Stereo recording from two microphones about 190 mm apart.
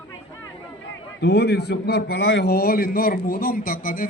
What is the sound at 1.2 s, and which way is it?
A man's voice, 60° left (ahead or behind).